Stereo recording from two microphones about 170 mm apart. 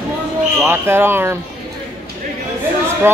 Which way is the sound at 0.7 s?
15° right (ahead or behind).